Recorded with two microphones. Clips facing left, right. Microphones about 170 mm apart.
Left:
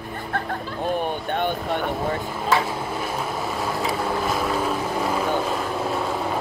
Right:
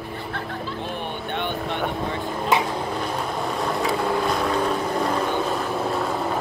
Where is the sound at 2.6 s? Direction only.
5° left (ahead or behind).